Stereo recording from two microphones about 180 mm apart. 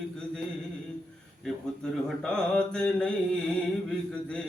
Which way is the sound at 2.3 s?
5° left (ahead or behind).